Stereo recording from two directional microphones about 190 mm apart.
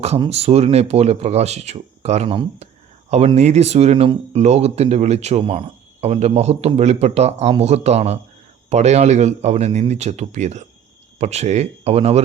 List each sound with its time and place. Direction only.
0.2 s speech: 35° right (ahead or behind)